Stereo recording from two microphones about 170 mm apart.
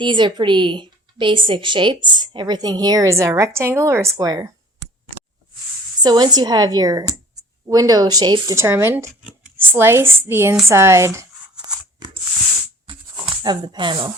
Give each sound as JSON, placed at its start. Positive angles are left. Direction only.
{"t": 0.0, "sound": "a woman's voice", "side_deg": -30}
{"t": 6.0, "sound": "a woman's voice", "side_deg": -25}
{"t": 11.6, "sound": "scissors", "side_deg": -25}
{"t": 12.9, "sound": "tearing", "side_deg": -30}